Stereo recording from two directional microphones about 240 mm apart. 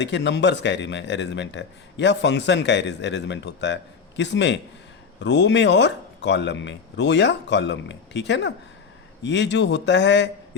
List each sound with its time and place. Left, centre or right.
0.0 s speech: left